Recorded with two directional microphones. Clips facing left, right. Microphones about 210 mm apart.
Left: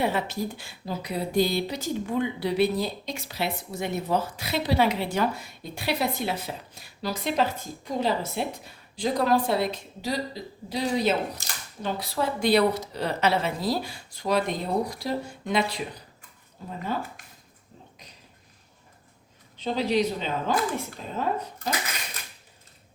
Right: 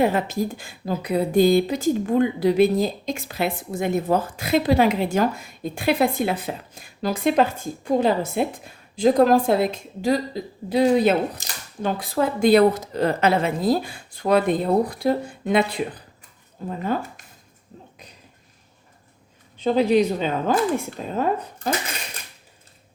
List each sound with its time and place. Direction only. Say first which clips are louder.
0.0 s speech: right 6 dB; 45° right (ahead or behind)
19.6 s speech: right 7 dB; 50° right (ahead or behind)